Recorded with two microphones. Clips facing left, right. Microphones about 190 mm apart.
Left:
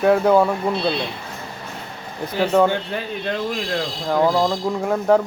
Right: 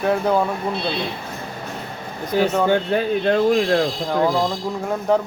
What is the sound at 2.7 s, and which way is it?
Speech, 45° right (ahead or behind).